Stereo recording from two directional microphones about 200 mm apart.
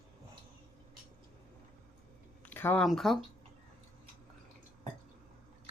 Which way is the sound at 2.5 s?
10° left (ahead or behind).